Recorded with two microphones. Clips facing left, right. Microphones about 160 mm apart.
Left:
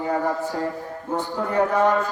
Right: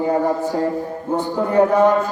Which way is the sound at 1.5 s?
20° right (ahead or behind).